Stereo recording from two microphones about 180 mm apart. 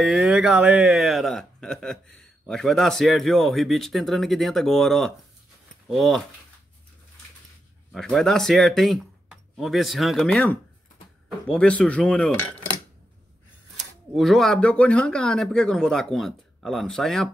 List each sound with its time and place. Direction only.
0.0 s speech: 5° right (ahead or behind)
7.9 s speech: centre (ahead or behind)
14.1 s speech: centre (ahead or behind)